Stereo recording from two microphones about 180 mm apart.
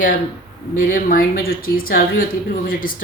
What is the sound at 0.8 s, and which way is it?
Speech, 50° left (ahead or behind).